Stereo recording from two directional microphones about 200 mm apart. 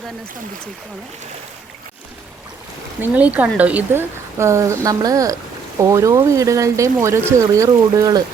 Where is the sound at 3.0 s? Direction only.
5° right (ahead or behind).